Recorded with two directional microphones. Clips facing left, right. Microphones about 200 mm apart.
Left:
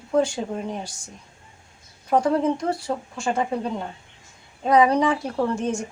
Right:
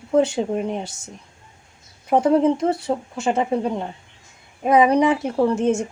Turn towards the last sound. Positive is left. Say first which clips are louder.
# right 5 dB
turn(degrees=-25)  # may be behind; listen again after turning